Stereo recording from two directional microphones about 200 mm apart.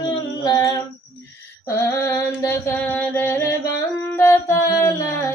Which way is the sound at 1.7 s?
15° left (ahead or behind).